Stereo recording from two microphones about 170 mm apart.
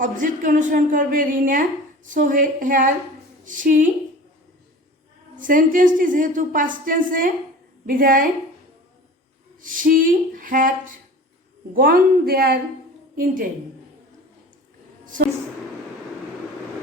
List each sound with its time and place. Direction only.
0.0 s a woman's voice: 50° right (ahead or behind)
5.4 s a woman's voice: 55° right (ahead or behind)
9.6 s a woman's voice: 50° right (ahead or behind)
11.7 s speech: 60° right (ahead or behind)
13.1 s a woman's voice: 55° right (ahead or behind)